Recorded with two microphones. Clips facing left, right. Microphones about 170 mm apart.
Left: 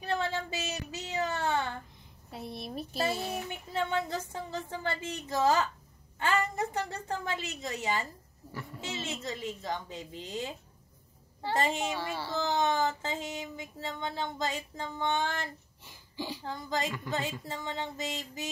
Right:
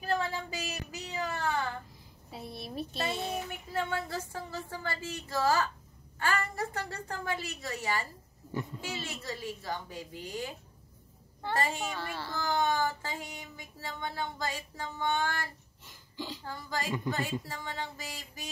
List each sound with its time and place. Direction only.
0.0 s child singing: 25° left (ahead or behind)
2.3 s a sound: centre (ahead or behind)
3.9 s a child's voice: 20° left (ahead or behind)
11.5 s a child's voice: 20° left (ahead or behind)